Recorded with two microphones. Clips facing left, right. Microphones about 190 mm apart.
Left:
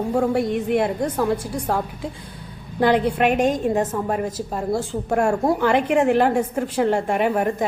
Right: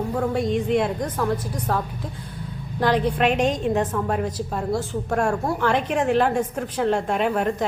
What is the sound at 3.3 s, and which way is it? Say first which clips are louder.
Speech: left 2 dB; 50° left (ahead or behind).